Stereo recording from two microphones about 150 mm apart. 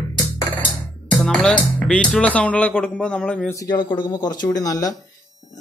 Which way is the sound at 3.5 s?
25° left (ahead or behind).